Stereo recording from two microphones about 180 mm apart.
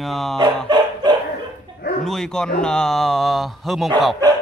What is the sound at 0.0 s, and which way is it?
Speech, centre (ahead or behind).